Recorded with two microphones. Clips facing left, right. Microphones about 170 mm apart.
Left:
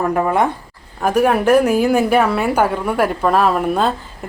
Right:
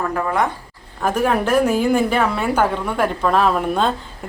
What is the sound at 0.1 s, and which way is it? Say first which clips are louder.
Speech: left 4 dB; 25° left (ahead or behind).